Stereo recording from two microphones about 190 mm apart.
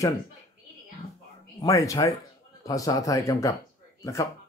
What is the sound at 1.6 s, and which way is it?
Speech, 15° left (ahead or behind).